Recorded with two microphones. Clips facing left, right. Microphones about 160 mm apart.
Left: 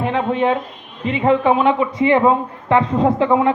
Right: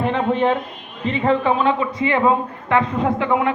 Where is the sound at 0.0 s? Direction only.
5° left (ahead or behind).